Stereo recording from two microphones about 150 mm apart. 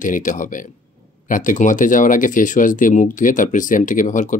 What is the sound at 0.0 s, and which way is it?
Speech, 60° left (ahead or behind).